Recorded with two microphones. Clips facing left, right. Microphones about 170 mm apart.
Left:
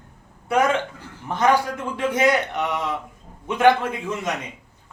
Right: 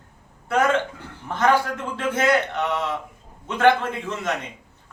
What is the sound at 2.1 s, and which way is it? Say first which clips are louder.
A man's voice: even; 15° left (ahead or behind).